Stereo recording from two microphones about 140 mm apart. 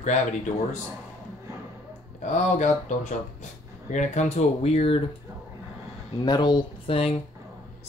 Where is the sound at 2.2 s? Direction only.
60° left (ahead or behind).